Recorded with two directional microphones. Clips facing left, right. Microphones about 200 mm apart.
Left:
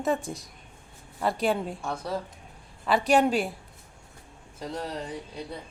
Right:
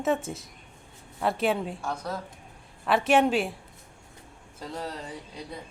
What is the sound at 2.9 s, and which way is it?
Speech, centre (ahead or behind).